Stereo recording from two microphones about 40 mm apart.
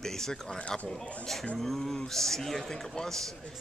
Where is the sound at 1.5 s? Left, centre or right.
Centre.